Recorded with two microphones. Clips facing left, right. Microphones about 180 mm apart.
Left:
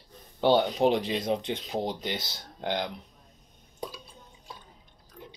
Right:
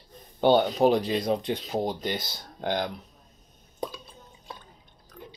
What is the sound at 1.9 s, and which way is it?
Speech, 50° right (ahead or behind).